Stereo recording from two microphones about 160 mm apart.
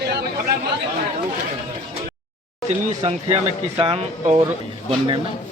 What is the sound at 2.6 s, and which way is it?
A man's voice, 40° right (ahead or behind).